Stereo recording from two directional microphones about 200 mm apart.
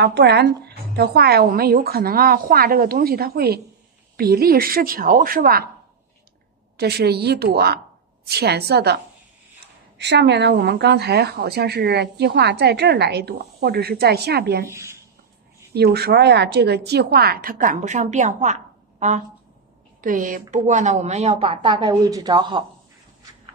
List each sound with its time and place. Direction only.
0.0 s a woman's voice: 55° right (ahead or behind)
6.8 s a woman's voice: 55° right (ahead or behind)
9.9 s speech: 60° right (ahead or behind)
14.7 s speech: 15° right (ahead or behind)
15.7 s a woman's voice: 55° right (ahead or behind); by 22.7 s 20° right (ahead or behind)